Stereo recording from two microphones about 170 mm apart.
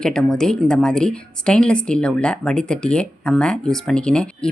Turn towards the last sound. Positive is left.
turn(degrees=5)  # may be behind; listen again after turning